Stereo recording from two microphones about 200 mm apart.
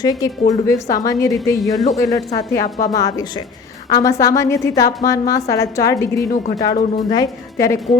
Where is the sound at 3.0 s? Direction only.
20° left (ahead or behind).